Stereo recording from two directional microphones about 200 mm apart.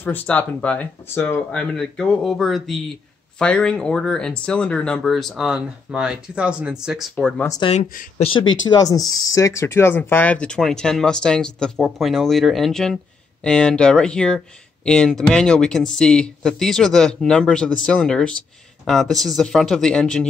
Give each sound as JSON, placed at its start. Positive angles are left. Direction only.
{"t": 0.0, "sound": "speech", "side_deg": 10}
{"t": 7.4, "sound": "speech", "side_deg": 20}
{"t": 7.7, "sound": "speech", "side_deg": 40}
{"t": 8.2, "sound": "speech", "side_deg": 25}